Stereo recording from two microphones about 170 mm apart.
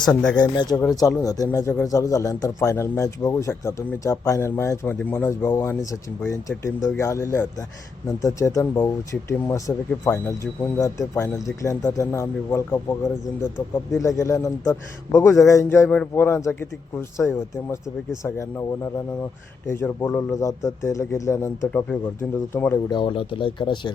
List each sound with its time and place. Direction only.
0.0 s speech: 5° left (ahead or behind)
0.3 s speech: 25° left (ahead or behind)
19.6 s speech: 15° left (ahead or behind)
22.9 s speech: 30° left (ahead or behind)